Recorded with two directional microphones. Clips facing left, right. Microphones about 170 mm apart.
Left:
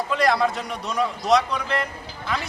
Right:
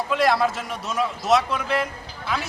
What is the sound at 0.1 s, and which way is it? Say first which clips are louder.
A man's voice: right 1 dB; centre (ahead or behind).